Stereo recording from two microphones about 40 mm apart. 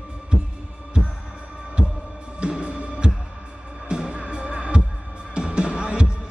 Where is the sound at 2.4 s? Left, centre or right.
Right.